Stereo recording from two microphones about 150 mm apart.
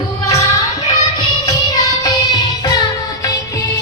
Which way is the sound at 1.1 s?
30° left (ahead or behind).